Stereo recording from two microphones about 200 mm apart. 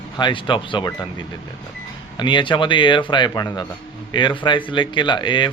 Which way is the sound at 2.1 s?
25° left (ahead or behind).